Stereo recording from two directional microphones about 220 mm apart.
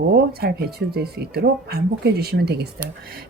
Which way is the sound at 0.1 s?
45° right (ahead or behind).